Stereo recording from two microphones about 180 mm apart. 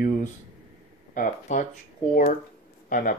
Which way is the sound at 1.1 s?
45° left (ahead or behind).